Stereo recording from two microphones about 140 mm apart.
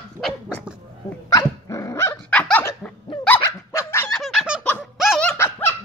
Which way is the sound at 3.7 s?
20° left (ahead or behind).